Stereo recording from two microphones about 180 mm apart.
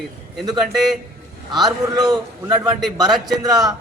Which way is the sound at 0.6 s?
Centre (ahead or behind).